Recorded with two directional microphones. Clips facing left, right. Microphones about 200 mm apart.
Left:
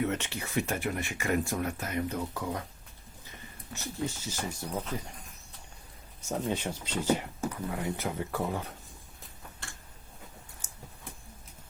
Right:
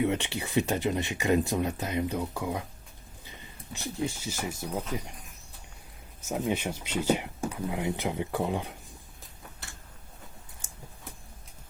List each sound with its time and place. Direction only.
0.0 s speech: 15° right (ahead or behind)
3.7 s speech: 15° right (ahead or behind)
6.2 s speech: 10° right (ahead or behind)